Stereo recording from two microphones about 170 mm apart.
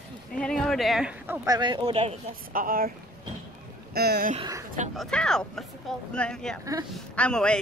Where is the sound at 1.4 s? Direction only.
25° right (ahead or behind).